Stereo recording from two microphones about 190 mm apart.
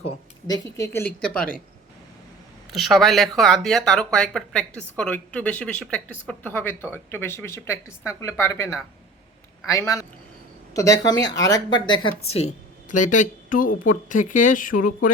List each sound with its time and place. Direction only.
0.4 s speech: 20° left (ahead or behind)
2.6 s speech: centre (ahead or behind); by 11.9 s 20° left (ahead or behind)
12.3 s a sound: 35° left (ahead or behind)
13.5 s speech: 45° left (ahead or behind)